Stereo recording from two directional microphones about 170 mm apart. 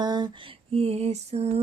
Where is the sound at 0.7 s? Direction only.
35° right (ahead or behind).